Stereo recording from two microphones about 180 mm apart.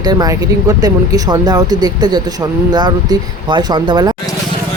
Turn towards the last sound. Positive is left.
turn(degrees=-25)  # may be behind; listen again after turning